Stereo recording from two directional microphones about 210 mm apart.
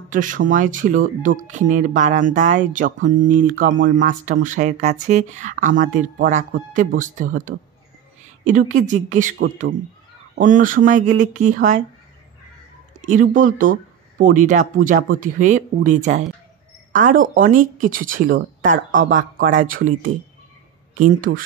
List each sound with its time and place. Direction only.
0.1 s speech: 40° right (ahead or behind)
13.0 s speech: 35° right (ahead or behind)